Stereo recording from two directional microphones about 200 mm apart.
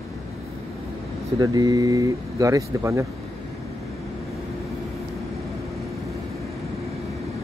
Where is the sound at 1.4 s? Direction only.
20° right (ahead or behind).